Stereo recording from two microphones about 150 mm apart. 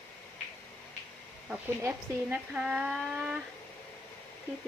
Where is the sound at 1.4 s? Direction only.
15° right (ahead or behind).